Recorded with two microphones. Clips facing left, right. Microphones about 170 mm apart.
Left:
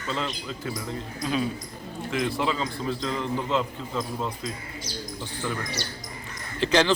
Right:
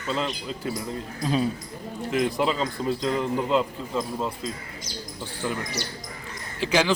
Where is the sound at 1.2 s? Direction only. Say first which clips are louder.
Right 3 dB; 35° right (ahead or behind).